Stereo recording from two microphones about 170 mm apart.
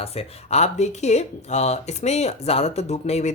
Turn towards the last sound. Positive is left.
turn(degrees=40)  # may be behind; listen again after turning